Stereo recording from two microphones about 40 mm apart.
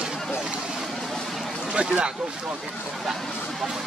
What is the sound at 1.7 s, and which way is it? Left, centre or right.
Speech, right.